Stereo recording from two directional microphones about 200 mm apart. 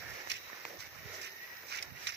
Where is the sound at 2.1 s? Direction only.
60° right (ahead or behind).